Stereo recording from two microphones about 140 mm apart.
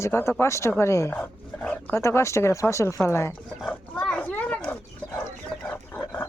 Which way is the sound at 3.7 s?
5° left (ahead or behind).